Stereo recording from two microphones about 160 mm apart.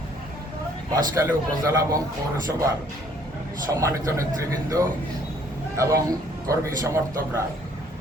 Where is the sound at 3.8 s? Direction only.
20° right (ahead or behind).